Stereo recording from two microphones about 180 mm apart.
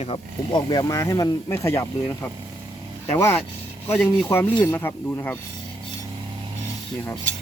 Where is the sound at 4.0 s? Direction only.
10° left (ahead or behind).